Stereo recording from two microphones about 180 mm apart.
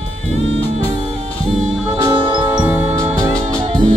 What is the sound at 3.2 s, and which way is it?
Music, 20° right (ahead or behind).